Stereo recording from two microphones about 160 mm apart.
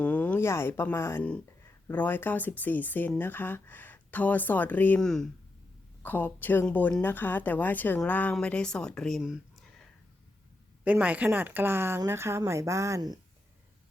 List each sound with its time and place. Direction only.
0.0 s a woman's voice: 10° left (ahead or behind)
10.8 s speech: 10° right (ahead or behind)